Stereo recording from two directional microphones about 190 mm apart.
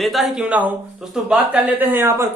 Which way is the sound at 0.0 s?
Centre (ahead or behind).